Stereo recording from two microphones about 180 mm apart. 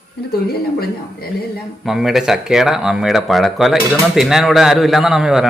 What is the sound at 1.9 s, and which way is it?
Speech, centre (ahead or behind).